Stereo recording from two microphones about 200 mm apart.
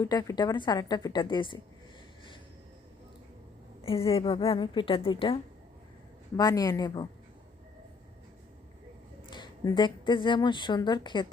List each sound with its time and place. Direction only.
0.0 s a woman's voice: 20° left (ahead or behind)
3.8 s a woman's voice: 30° left (ahead or behind)
9.3 s a woman's voice: 20° left (ahead or behind)